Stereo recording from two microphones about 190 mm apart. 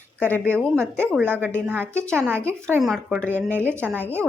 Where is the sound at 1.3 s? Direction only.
10° right (ahead or behind).